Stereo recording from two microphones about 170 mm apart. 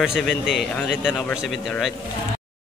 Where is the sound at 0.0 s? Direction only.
Centre (ahead or behind).